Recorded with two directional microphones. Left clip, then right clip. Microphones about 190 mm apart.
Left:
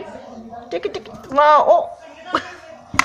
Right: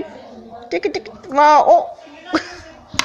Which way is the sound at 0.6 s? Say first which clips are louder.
Right 4 dB; 15° right (ahead or behind).